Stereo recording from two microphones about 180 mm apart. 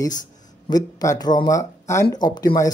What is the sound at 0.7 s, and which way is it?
Speech, 20° left (ahead or behind).